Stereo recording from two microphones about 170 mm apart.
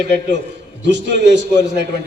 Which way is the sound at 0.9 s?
90° right.